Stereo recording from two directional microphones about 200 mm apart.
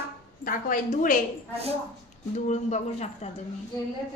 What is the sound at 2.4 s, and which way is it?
Speech, 35° left (ahead or behind).